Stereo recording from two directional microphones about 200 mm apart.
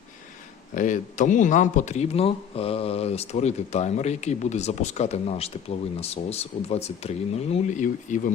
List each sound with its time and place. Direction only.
0.7 s speech: 40° left (ahead or behind)